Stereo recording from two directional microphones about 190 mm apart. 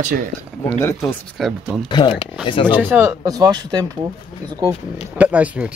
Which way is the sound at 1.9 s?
25° left (ahead or behind).